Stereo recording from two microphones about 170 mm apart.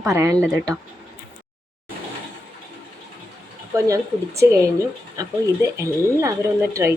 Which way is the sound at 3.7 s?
20° right (ahead or behind).